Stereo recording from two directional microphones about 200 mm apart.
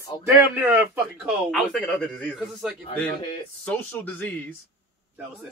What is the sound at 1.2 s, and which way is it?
A man's voice, centre (ahead or behind).